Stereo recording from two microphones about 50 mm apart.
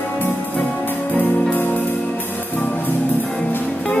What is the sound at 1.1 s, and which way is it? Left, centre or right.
Music, left.